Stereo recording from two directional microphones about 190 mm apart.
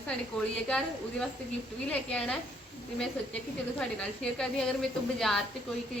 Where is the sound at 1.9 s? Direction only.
5° left (ahead or behind).